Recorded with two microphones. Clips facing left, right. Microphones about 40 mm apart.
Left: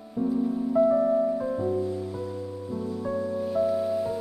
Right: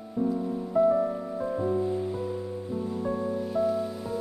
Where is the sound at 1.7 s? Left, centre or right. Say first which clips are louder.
Right 1 dB; right.